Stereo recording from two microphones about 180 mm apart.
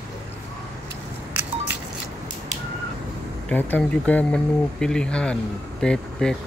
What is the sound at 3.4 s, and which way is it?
Speech, 10° left (ahead or behind).